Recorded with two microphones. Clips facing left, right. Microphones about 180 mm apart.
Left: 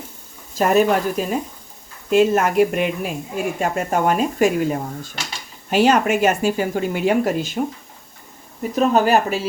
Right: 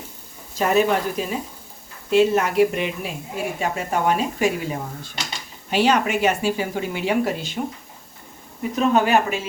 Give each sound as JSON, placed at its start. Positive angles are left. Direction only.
{"t": 0.6, "sound": "speech", "side_deg": 50}
{"t": 8.7, "sound": "speech", "side_deg": 40}